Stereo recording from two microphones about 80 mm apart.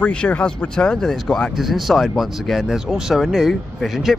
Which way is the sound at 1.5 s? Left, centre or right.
Centre.